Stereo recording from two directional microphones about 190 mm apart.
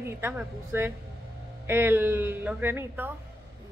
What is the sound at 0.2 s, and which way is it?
A woman's voice, 10° right (ahead or behind).